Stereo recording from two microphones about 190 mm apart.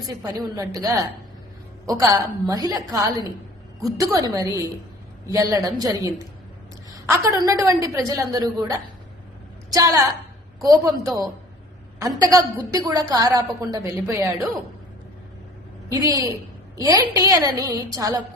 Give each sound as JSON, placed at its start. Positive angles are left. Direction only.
{"t": 0.1, "sound": "a woman's voice", "side_deg": -20}
{"t": 16.0, "sound": "a woman's voice", "side_deg": -20}